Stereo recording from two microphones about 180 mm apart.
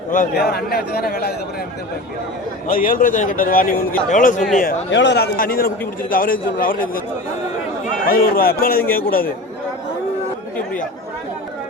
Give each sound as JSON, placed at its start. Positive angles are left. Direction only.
{"t": 0.1, "sound": "a man's voice", "side_deg": 55}
{"t": 2.6, "sound": "a man's voice", "side_deg": 50}
{"t": 4.9, "sound": "a man's voice", "side_deg": 85}
{"t": 8.0, "sound": "a man's voice", "side_deg": 55}